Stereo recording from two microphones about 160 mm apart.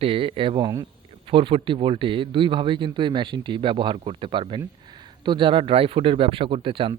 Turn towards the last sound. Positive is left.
turn(degrees=-35)  # may be behind; listen again after turning